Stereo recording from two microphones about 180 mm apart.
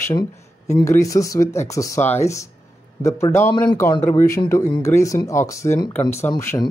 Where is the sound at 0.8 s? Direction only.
15° left (ahead or behind).